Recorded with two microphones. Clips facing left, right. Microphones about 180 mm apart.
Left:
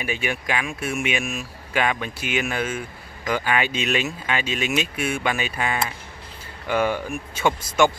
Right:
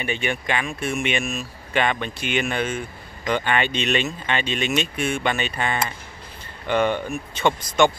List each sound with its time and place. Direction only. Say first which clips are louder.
0.0 s speech: right 1 dB; 5° left (ahead or behind)